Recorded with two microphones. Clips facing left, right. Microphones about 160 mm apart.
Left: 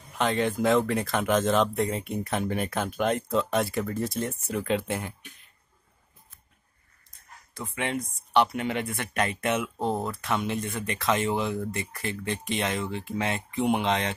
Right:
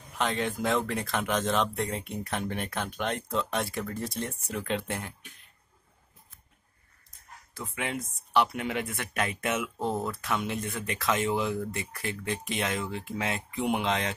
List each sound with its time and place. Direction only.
0.2 s speech: centre (ahead or behind)
7.7 s speech: 5° right (ahead or behind)
9.8 s speech: 25° left (ahead or behind)
10.2 s speech: centre (ahead or behind)